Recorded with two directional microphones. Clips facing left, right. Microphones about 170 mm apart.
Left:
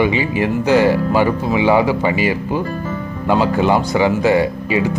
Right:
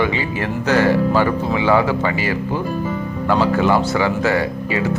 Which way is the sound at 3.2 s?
15° left (ahead or behind).